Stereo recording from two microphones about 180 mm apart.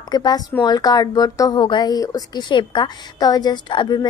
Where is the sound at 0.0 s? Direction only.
25° left (ahead or behind).